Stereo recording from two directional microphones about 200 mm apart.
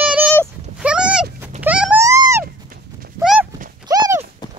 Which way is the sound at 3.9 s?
20° right (ahead or behind).